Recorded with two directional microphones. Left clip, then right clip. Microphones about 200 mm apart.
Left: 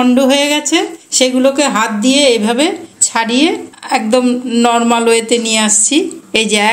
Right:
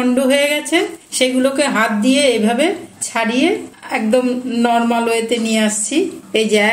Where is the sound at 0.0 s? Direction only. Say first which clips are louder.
Left 3 dB; 35° left (ahead or behind).